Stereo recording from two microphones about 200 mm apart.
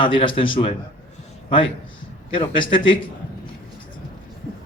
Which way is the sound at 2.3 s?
25° left (ahead or behind).